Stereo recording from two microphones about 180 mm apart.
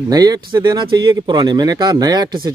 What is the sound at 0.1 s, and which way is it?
Speech, 20° right (ahead or behind).